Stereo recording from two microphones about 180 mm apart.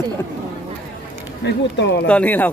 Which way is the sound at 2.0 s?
5° left (ahead or behind).